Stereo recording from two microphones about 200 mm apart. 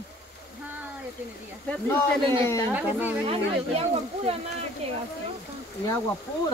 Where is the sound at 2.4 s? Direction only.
10° left (ahead or behind).